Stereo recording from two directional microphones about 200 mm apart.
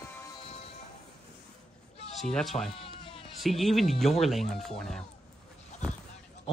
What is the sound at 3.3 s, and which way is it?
Speech, centre (ahead or behind).